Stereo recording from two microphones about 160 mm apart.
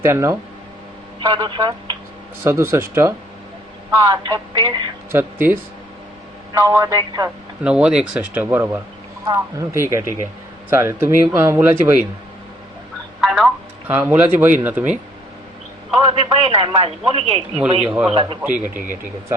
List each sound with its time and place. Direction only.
0.0 s speech: 15° right (ahead or behind)
1.2 s speech: 30° right (ahead or behind)
2.4 s speech: 15° right (ahead or behind)
5.1 s speech: 10° right (ahead or behind)
7.6 s speech: 5° right (ahead or behind)
13.2 s a sound: centre (ahead or behind)
13.8 s speech: 10° right (ahead or behind)
16.0 s a man's voice: 35° right (ahead or behind)
18.4 s speech: 10° right (ahead or behind)